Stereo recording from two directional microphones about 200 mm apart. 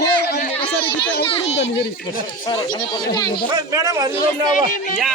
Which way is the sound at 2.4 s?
20° left (ahead or behind).